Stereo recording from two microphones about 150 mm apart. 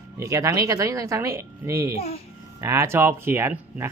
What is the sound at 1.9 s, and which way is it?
Speech, 40° left (ahead or behind).